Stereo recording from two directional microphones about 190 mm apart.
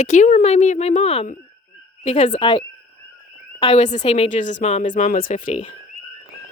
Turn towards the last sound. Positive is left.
turn(degrees=45)  # may be behind; listen again after turning